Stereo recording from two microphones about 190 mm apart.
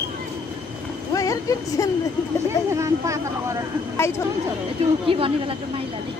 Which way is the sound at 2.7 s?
15° right (ahead or behind).